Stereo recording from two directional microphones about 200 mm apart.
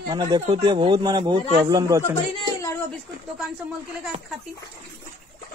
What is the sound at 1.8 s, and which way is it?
Speech, 15° right (ahead or behind).